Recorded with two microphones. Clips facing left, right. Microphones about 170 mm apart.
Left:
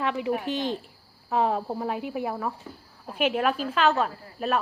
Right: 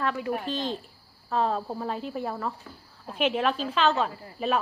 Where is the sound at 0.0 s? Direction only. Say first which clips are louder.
Left 2 dB; 20° left (ahead or behind).